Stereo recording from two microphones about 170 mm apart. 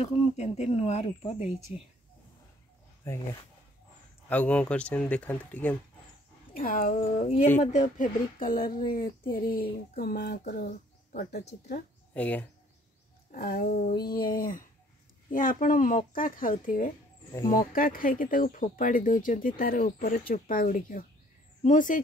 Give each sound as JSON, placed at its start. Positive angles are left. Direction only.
{"t": 0.0, "sound": "speech", "side_deg": 40}
{"t": 4.3, "sound": "speech", "side_deg": 10}
{"t": 6.6, "sound": "speech", "side_deg": 55}
{"t": 12.1, "sound": "speech", "side_deg": 10}
{"t": 13.3, "sound": "speech", "side_deg": 65}
{"t": 13.7, "sound": "speech", "side_deg": 45}
{"t": 13.9, "sound": "speech", "side_deg": 65}
{"t": 14.3, "sound": "speech", "side_deg": 55}
{"t": 17.3, "sound": "speech", "side_deg": 20}
{"t": 17.6, "sound": "speech", "side_deg": 55}